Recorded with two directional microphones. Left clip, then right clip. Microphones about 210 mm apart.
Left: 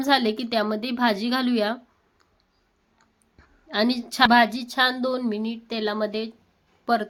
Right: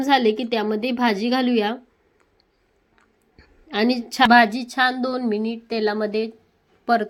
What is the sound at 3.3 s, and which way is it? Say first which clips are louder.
A woman's voice: even; 5° right (ahead or behind).